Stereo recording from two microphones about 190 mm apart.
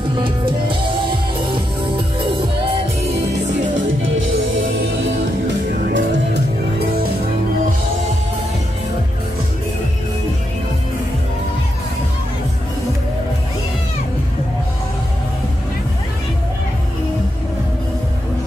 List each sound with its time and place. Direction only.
0.1 s music: 25° right (ahead or behind)
4.0 s music: 90° right
5.9 s music: 60° right (ahead or behind)